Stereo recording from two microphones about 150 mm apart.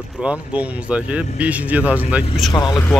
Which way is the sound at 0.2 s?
10° right (ahead or behind).